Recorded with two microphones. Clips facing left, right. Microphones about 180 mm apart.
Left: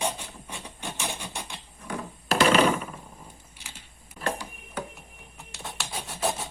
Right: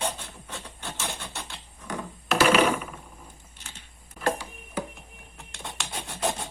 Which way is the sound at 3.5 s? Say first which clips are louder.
Even; 10° left (ahead or behind).